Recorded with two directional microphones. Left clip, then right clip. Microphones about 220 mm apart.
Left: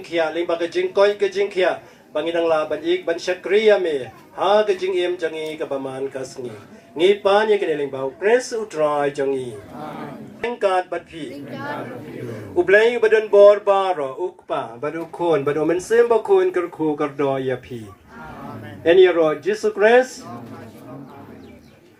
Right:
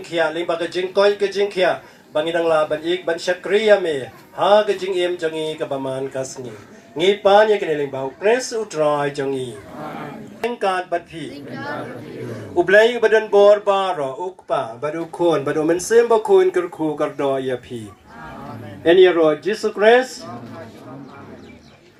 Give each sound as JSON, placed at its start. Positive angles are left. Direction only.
{"t": 0.1, "sound": "speech", "side_deg": -50}
{"t": 10.4, "sound": "speech", "side_deg": -50}
{"t": 12.5, "sound": "speech", "side_deg": -50}
{"t": 18.8, "sound": "speech", "side_deg": -55}